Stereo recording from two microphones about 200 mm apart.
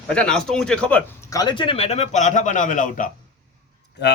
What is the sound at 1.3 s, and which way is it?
A man's voice, 20° left (ahead or behind).